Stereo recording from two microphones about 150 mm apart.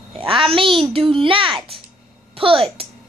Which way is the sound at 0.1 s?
35° right (ahead or behind).